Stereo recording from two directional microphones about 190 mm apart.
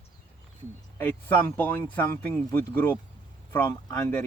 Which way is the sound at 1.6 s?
10° left (ahead or behind).